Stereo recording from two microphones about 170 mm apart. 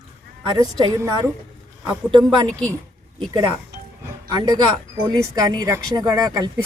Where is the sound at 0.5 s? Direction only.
25° right (ahead or behind).